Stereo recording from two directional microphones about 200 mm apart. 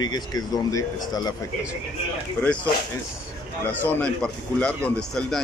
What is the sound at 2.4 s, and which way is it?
Speech, 5° left (ahead or behind).